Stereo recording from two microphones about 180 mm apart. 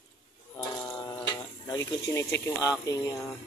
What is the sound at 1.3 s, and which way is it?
Speech, 20° left (ahead or behind).